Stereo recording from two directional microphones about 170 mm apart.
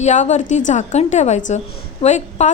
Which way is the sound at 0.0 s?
45° left (ahead or behind).